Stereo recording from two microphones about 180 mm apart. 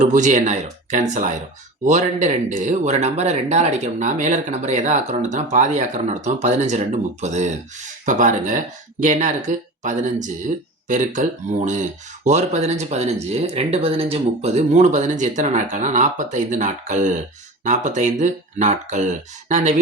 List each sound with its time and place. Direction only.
0.0 s speech: 45° right (ahead or behind)